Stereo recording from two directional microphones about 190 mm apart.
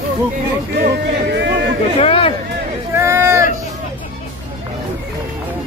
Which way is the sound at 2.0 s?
30° left (ahead or behind).